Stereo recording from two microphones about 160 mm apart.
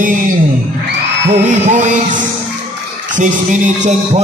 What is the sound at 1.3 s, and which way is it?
Music, 50° right (ahead or behind).